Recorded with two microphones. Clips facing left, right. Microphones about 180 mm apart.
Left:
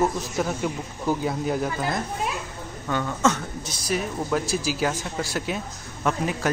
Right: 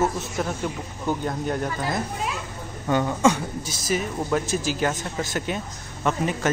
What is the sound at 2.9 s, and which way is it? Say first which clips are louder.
Speech: right 3 dB; 15° right (ahead or behind).